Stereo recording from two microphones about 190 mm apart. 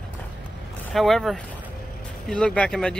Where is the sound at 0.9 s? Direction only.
Centre (ahead or behind).